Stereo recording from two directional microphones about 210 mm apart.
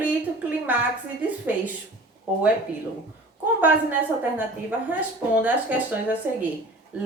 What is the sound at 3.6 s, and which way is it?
A woman's voice, 10° right (ahead or behind).